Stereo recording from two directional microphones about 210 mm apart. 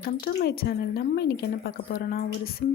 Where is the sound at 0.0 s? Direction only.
45° left (ahead or behind).